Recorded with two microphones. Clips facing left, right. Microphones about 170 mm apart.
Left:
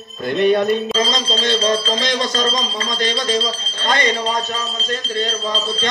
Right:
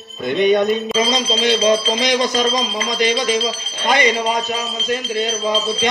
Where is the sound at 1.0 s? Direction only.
10° right (ahead or behind).